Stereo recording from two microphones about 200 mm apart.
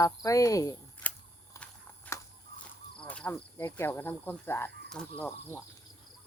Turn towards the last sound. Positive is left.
turn(degrees=10)  # may be behind; listen again after turning